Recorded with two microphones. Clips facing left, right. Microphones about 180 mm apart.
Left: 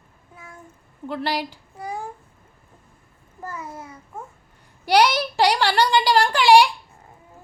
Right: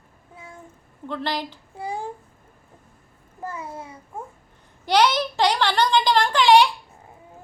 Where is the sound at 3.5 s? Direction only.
30° right (ahead or behind).